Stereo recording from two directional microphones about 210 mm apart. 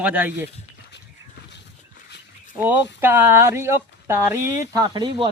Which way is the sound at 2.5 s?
10° right (ahead or behind).